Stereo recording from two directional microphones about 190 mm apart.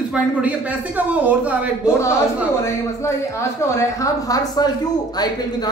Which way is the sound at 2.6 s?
15° left (ahead or behind).